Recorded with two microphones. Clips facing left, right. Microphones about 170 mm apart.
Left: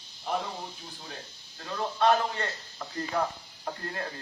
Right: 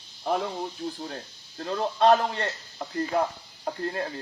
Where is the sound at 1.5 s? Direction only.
40° right (ahead or behind).